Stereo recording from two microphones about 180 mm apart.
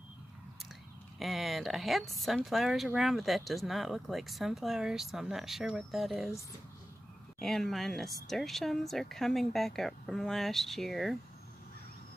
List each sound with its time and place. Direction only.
1.2 s speech: centre (ahead or behind)
7.3 s speech: centre (ahead or behind)